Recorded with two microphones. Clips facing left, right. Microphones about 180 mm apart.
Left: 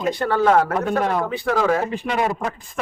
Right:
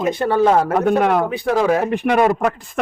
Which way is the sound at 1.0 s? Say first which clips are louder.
Right 3 dB; 70° right (ahead or behind).